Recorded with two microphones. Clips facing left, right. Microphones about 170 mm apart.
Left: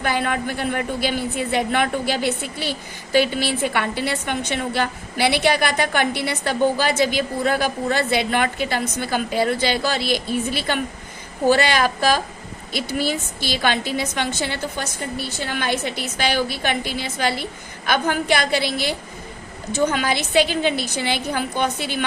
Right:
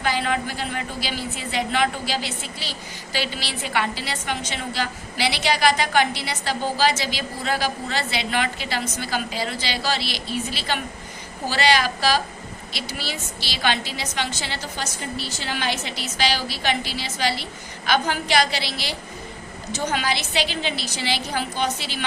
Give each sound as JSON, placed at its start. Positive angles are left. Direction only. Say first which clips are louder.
{"t": 0.0, "sound": "speech", "louder": "left 1 dB", "side_deg": 55}